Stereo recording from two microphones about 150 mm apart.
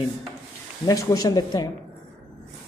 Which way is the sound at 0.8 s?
20° left (ahead or behind).